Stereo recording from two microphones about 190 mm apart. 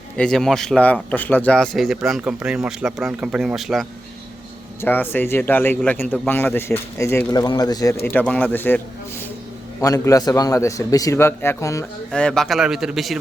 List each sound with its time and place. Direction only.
0.2 s speech: centre (ahead or behind)
4.8 s a man's voice: 10° left (ahead or behind)
8.0 s a man's voice: 10° left (ahead or behind)
9.8 s a man's voice: 15° left (ahead or behind); by 13.1 s centre (ahead or behind)